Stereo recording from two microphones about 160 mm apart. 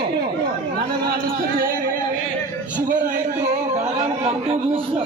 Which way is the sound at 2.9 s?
55° right (ahead or behind).